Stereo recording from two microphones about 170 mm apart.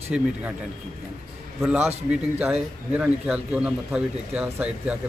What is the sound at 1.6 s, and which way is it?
A man's voice, 10° right (ahead or behind).